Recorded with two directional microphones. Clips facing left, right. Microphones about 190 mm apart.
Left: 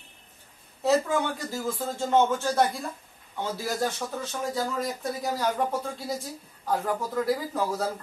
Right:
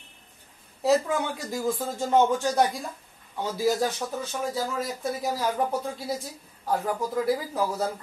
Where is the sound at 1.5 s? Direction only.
15° right (ahead or behind).